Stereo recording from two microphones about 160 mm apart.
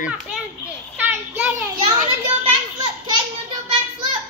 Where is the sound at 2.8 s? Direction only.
25° right (ahead or behind).